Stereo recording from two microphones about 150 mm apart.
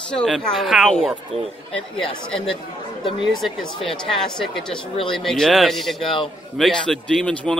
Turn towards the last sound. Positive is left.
turn(degrees=5)  # may be behind; listen again after turning